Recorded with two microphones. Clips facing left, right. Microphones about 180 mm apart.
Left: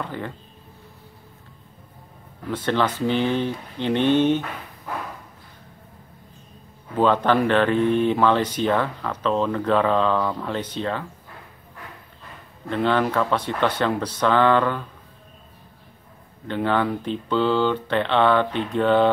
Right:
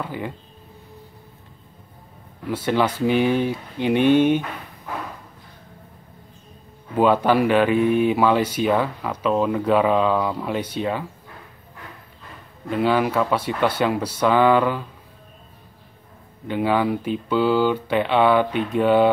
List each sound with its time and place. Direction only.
0.0 s speech: 10° right (ahead or behind)
2.5 s speech: 10° right (ahead or behind)
7.0 s speech: 10° right (ahead or behind)
12.6 s speech: 5° right (ahead or behind)
16.4 s speech: 10° right (ahead or behind)